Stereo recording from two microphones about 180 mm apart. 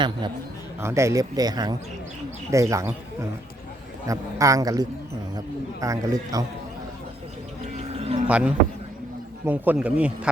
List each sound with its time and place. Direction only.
0.8 s speech: 15° right (ahead or behind)
7.9 s a sound: 35° right (ahead or behind)
8.3 s speech: 5° right (ahead or behind)